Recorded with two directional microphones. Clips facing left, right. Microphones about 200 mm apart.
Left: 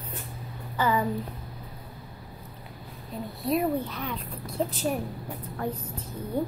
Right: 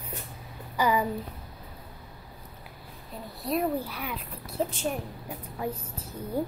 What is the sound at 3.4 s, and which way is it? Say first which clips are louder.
A woman's voice: left 2 dB; centre (ahead or behind).